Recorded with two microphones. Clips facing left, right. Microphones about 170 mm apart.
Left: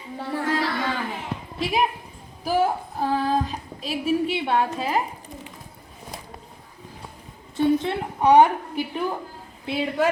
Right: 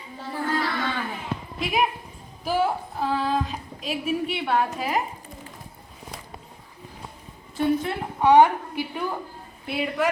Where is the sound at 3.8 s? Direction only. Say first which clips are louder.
Left 3 dB; 35° left (ahead or behind).